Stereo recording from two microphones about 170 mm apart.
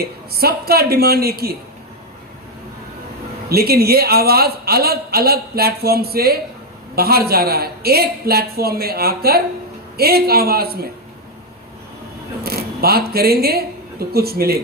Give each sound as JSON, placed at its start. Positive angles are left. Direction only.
{"t": 0.0, "sound": "a man's voice", "side_deg": -65}
{"t": 3.5, "sound": "a man's voice", "side_deg": -65}
{"t": 12.4, "sound": "speech", "side_deg": -65}